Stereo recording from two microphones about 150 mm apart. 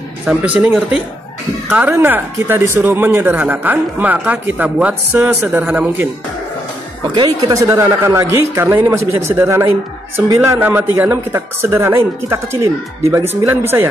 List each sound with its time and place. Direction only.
0.2 s speech: 5° right (ahead or behind)
7.2 s speech: 25° right (ahead or behind)